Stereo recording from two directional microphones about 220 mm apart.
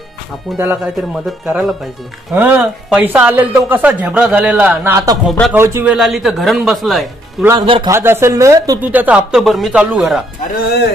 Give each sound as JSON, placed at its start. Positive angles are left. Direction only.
{"t": 0.6, "sound": "a man's voice", "side_deg": -5}
{"t": 7.4, "sound": "a man's voice", "side_deg": -20}